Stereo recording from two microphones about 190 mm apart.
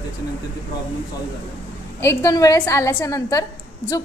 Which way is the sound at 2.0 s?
15° left (ahead or behind).